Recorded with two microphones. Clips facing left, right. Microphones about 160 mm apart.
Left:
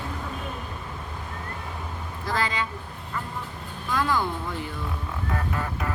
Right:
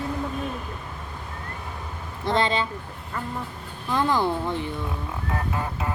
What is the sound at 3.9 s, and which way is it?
Speech, 25° right (ahead or behind).